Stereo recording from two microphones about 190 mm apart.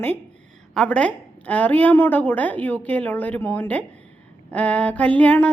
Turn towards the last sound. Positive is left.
turn(degrees=10)  # may be behind; listen again after turning